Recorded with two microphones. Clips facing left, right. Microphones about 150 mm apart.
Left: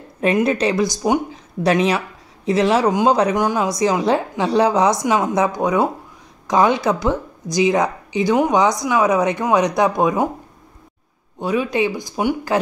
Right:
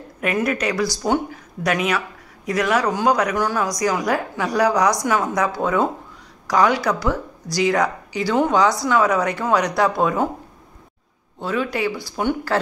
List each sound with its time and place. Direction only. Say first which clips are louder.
0.2 s speech: left 5 dB; 25° left (ahead or behind)
1.6 s speech: left 4 dB; 30° left (ahead or behind)
11.3 s speech: left 4 dB; 15° left (ahead or behind)